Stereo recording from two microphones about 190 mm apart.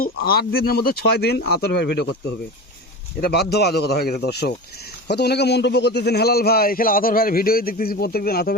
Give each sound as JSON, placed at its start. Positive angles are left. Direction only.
{"t": 0.0, "sound": "speech", "side_deg": 55}
{"t": 3.2, "sound": "a man's voice", "side_deg": 55}